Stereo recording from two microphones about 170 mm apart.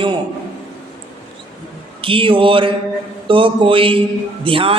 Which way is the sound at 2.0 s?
30° right (ahead or behind).